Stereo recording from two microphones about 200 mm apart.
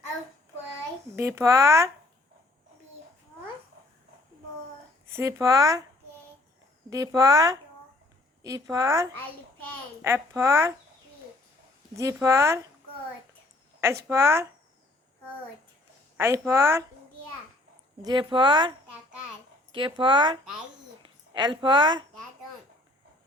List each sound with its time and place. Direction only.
1.1 s speech: 15° right (ahead or behind)
5.1 s speech: 15° right (ahead or behind)
6.9 s speech: 15° right (ahead or behind)
11.9 s speech: 15° right (ahead or behind)
14.1 s speech: 15° right (ahead or behind)
16.1 s speech: 10° right (ahead or behind)
18.0 s speech: 25° right (ahead or behind)
19.7 s a woman's voice: 25° right (ahead or behind)